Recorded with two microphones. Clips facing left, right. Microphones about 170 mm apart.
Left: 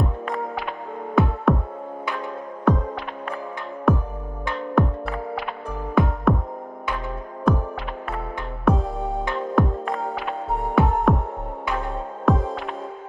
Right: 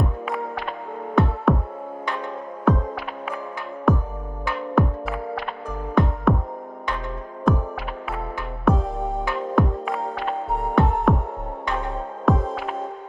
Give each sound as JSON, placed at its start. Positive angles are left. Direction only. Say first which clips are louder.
{"t": 0.0, "sound": "music", "louder": "even", "side_deg": -5}
{"t": 2.7, "sound": "music", "louder": "even", "side_deg": 0}
{"t": 3.9, "sound": "music", "louder": "even", "side_deg": 0}
{"t": 6.3, "sound": "music", "louder": "even", "side_deg": 0}
{"t": 7.5, "sound": "music", "louder": "even", "side_deg": 0}
{"t": 8.6, "sound": "music", "louder": "even", "side_deg": 0}
{"t": 12.3, "sound": "music", "louder": "even", "side_deg": 0}